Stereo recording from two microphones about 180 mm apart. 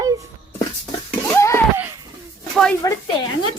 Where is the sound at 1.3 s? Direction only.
15° left (ahead or behind).